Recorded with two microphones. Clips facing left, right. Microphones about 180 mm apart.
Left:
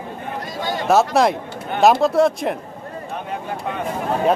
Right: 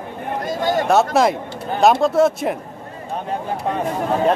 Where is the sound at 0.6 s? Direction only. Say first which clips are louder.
Right 5 dB; 50° right (ahead or behind).